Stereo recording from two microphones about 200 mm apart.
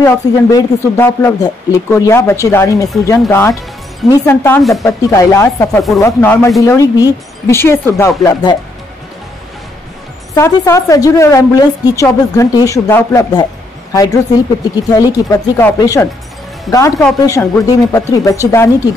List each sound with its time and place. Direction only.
0.0 s a woman's voice: 10° left (ahead or behind)
10.3 s a woman's voice: 15° left (ahead or behind)